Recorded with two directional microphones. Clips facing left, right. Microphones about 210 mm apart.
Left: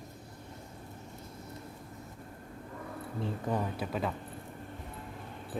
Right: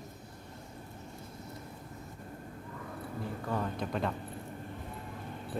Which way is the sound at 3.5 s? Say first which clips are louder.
Left 2 dB; 20° left (ahead or behind).